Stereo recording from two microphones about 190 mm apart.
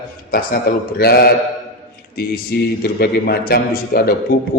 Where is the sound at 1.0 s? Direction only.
55° left (ahead or behind).